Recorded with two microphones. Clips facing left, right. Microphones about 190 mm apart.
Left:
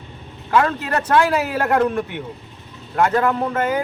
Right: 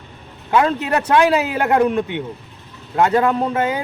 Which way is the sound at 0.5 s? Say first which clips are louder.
Right 2 dB; 20° right (ahead or behind).